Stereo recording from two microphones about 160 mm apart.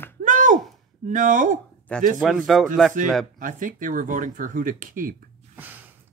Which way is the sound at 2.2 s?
Centre (ahead or behind).